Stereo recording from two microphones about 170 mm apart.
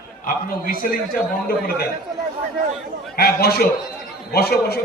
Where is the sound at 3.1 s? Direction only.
65° left (ahead or behind).